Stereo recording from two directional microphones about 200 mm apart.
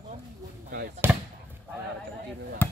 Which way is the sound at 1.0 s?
10° right (ahead or behind).